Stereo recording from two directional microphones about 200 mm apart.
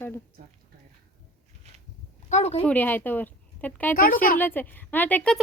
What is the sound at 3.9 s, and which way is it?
Speech, 45° left (ahead or behind).